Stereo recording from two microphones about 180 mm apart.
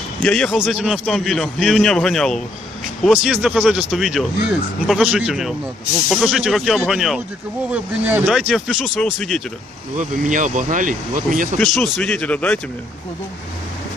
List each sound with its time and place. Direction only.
0.2 s speech: 5° left (ahead or behind)
9.9 s speech: 45° right (ahead or behind)
11.6 s speech: centre (ahead or behind)